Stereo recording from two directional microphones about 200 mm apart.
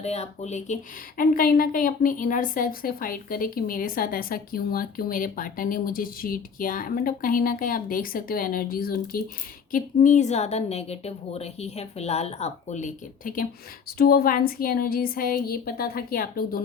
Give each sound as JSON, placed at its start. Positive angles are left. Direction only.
{"t": 0.0, "sound": "a woman's voice", "side_deg": 30}